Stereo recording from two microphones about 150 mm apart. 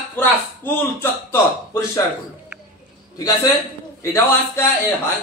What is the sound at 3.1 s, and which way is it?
A man's voice, 25° left (ahead or behind).